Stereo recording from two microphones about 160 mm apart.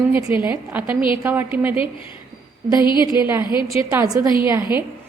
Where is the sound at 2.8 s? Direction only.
30° left (ahead or behind).